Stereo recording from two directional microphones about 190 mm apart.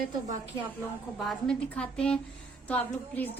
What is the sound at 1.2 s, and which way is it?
A woman's voice, centre (ahead or behind).